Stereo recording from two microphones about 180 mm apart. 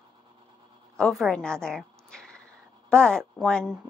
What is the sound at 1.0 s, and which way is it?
A woman's voice, centre (ahead or behind).